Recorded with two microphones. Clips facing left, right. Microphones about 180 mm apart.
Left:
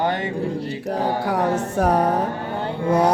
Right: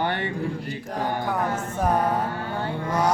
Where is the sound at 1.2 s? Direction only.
75° left (ahead or behind).